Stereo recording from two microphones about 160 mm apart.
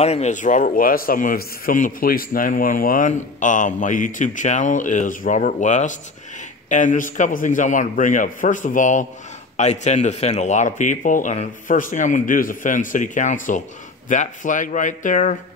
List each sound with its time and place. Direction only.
0.0 s a man's voice: 45° left (ahead or behind)